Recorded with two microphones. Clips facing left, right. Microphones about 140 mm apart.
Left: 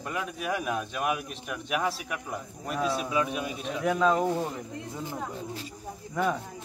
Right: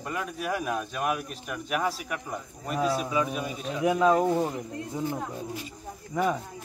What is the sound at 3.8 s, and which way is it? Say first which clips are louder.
Speech: right 3 dB; 10° right (ahead or behind).